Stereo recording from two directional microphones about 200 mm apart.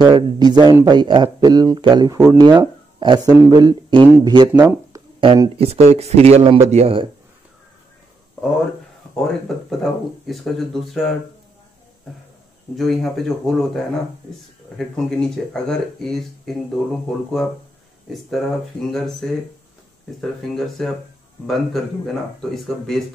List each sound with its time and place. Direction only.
0.0 s speech: 20° right (ahead or behind)
5.2 s speech: 25° right (ahead or behind)
10.2 s speech: centre (ahead or behind)
12.7 s speech: centre (ahead or behind)
18.1 s speech: centre (ahead or behind)